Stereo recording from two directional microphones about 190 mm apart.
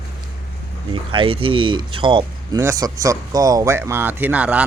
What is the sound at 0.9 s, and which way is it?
A man's voice, 25° right (ahead or behind).